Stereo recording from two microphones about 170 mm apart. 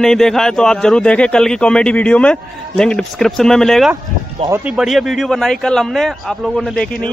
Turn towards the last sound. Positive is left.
turn(degrees=5)  # may be behind; listen again after turning